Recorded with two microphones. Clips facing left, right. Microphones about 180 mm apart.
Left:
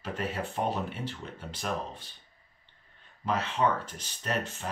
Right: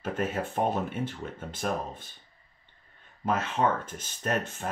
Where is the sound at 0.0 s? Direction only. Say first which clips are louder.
Right 4 dB; 50° right (ahead or behind).